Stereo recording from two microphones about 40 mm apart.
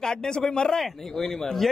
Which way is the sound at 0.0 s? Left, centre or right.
Centre.